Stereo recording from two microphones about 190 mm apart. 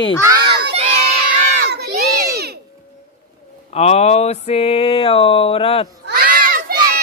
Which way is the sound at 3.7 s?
35° left (ahead or behind).